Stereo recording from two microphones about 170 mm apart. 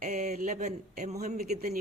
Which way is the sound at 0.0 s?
50° right (ahead or behind).